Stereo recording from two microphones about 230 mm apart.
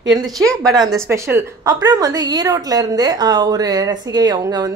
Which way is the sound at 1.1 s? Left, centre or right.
Centre.